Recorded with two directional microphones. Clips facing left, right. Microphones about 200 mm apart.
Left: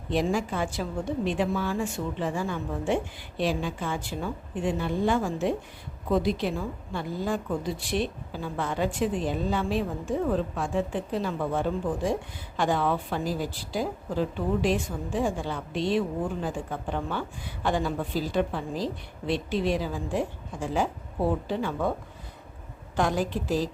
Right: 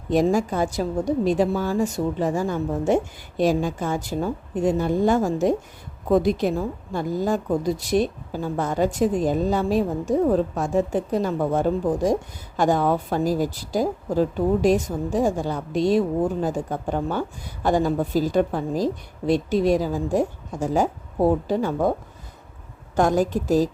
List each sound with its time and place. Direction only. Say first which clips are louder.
0.1 s a woman's voice: right 7 dB; 45° right (ahead or behind)
23.0 s a woman's voice: right 6 dB; 45° right (ahead or behind)